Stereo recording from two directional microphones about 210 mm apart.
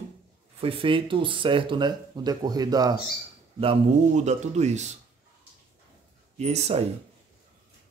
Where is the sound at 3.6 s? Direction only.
30° right (ahead or behind).